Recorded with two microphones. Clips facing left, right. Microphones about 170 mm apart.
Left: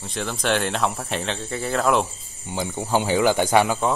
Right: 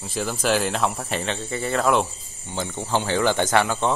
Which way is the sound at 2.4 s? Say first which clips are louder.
Left 2 dB; 15° left (ahead or behind).